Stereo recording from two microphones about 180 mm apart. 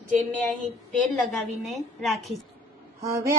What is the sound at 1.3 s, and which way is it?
A woman's voice, centre (ahead or behind).